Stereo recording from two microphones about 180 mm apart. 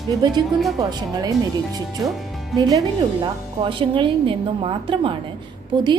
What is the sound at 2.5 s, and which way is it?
A woman's voice, 20° right (ahead or behind).